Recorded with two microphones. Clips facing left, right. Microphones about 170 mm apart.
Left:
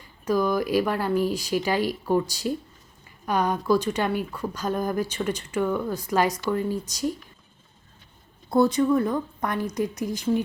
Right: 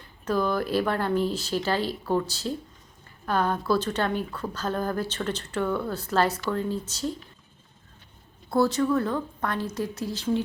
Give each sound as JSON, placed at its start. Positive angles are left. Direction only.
{"t": 0.0, "sound": "a woman's voice", "side_deg": 10}
{"t": 8.4, "sound": "a woman's voice", "side_deg": 15}